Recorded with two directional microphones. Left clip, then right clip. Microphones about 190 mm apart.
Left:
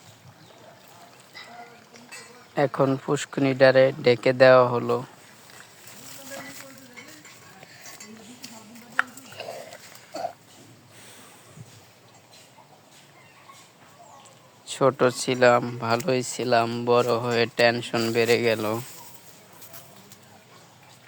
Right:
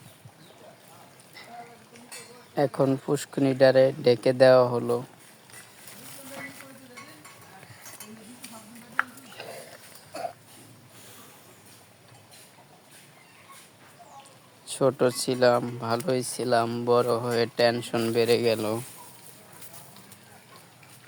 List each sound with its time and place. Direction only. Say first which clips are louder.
2.6 s speech: left 2 dB; 5° right (ahead or behind)
9.0 s a sound: left 2 dB; 45° left (ahead or behind)
14.7 s speech: left 3 dB; centre (ahead or behind)